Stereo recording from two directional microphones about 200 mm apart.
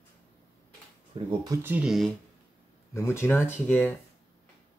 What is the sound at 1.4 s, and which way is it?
Speech, 15° right (ahead or behind).